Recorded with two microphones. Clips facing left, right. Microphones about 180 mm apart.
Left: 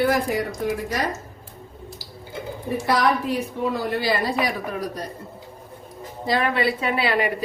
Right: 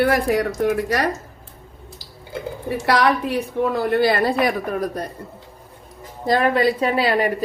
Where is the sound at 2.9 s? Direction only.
70° right (ahead or behind).